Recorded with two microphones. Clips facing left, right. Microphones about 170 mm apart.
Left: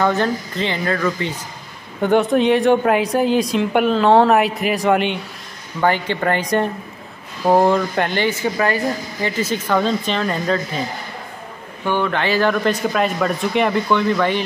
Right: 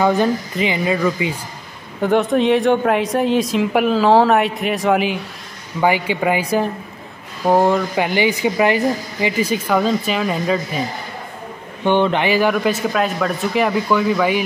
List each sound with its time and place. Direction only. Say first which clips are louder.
0.0 s speech: right 2 dB; 10° right (ahead or behind)
2.0 s a woman's voice: even; centre (ahead or behind)
11.8 s speech: right 4 dB; 20° right (ahead or behind)